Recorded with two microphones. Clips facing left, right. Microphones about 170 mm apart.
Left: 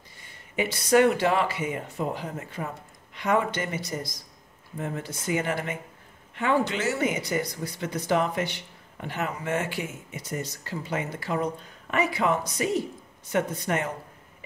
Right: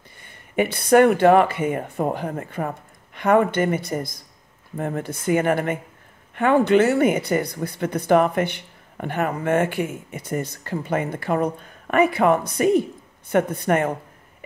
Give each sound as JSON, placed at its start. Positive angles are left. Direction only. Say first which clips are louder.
{"t": 0.2, "sound": "speech", "louder": "right 7 dB", "side_deg": -55}